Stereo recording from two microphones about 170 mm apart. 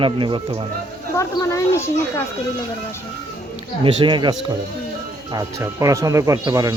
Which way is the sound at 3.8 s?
30° right (ahead or behind).